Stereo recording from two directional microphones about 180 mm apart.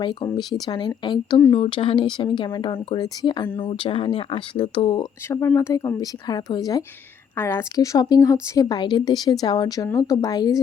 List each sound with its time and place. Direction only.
0.0 s a woman's voice: 25° left (ahead or behind)
5.3 s a woman's voice: 15° left (ahead or behind)